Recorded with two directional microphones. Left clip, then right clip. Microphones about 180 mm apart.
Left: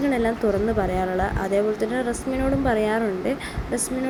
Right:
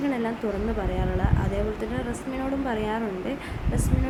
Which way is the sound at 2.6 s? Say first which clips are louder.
Left 6 dB; 20° left (ahead or behind).